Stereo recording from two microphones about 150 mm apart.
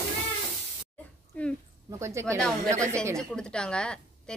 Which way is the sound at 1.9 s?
20° right (ahead or behind).